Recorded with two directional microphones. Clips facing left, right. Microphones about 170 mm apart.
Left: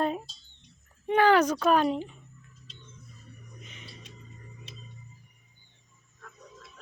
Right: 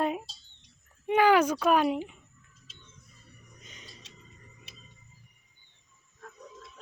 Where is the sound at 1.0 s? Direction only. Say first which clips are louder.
Left 1 dB; 10° right (ahead or behind).